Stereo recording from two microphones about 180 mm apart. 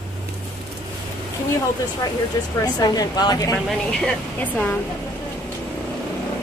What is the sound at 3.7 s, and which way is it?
Speech, 5° left (ahead or behind).